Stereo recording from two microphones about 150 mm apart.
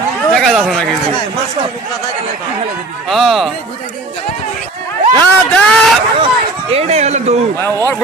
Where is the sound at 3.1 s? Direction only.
Centre (ahead or behind).